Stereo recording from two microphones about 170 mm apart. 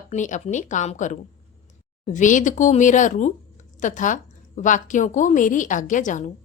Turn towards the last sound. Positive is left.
turn(degrees=50)  # may be behind; listen again after turning